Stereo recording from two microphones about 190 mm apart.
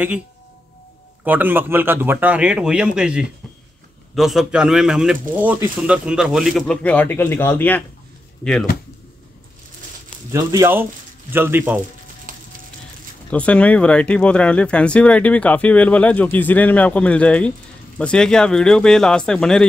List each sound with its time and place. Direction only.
1.2 s speech: 10° right (ahead or behind); by 7.8 s 10° left (ahead or behind)
10.3 s speech: 15° right (ahead or behind)
13.3 s speech: 5° left (ahead or behind)